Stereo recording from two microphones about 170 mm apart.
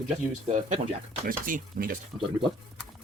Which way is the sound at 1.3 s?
55° right (ahead or behind).